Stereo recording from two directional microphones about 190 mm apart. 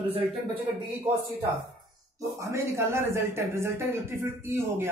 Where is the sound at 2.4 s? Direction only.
15° right (ahead or behind).